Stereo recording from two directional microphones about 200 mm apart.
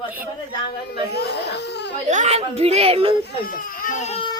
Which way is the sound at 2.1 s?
35° right (ahead or behind).